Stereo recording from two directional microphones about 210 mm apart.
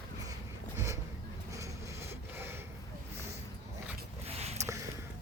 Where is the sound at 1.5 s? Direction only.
15° right (ahead or behind).